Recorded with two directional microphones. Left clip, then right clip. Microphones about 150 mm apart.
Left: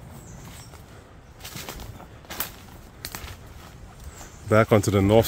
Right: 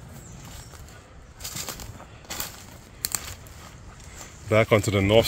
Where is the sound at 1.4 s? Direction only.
90° right.